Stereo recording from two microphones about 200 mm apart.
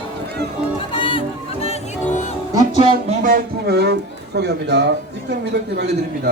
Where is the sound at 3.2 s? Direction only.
50° right (ahead or behind).